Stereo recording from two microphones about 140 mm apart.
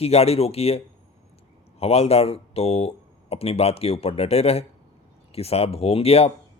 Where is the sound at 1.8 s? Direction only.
45° left (ahead or behind).